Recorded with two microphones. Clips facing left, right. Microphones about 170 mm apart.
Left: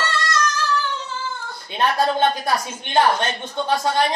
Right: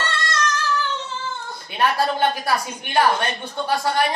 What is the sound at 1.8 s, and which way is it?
Speech, 20° left (ahead or behind).